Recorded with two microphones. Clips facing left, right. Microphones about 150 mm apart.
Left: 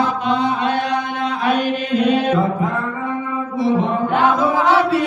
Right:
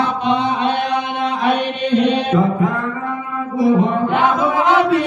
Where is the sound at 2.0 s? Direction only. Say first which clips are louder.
Even; centre (ahead or behind).